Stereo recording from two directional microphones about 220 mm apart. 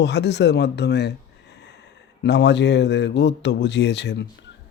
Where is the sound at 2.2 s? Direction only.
50° left (ahead or behind).